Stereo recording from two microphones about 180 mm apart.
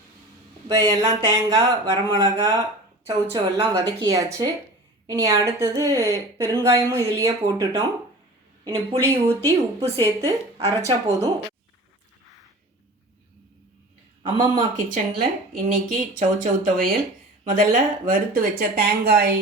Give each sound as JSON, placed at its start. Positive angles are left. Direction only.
{"t": 0.7, "sound": "a woman's voice", "side_deg": -20}
{"t": 9.0, "sound": "a woman's voice", "side_deg": -15}
{"t": 14.3, "sound": "speech", "side_deg": -20}
{"t": 14.8, "sound": "speech", "side_deg": -45}